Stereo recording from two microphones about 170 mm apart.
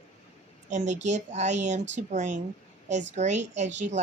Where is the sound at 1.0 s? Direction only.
45° right (ahead or behind).